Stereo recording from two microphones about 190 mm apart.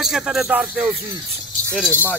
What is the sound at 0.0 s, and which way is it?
Speech, centre (ahead or behind).